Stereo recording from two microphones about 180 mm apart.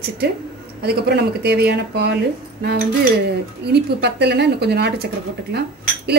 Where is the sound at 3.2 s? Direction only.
65° right (ahead or behind).